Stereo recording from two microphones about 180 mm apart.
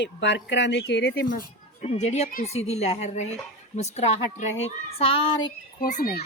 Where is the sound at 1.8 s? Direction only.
35° left (ahead or behind).